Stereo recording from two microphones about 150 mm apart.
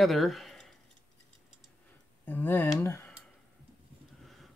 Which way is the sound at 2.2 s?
10° left (ahead or behind).